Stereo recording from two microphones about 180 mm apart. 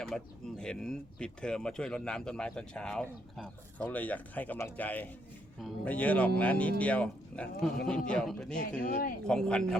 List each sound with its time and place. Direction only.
0.0 s speech: 5° left (ahead or behind)
8.8 s speech: 50° left (ahead or behind)
9.2 s speech: 5° left (ahead or behind)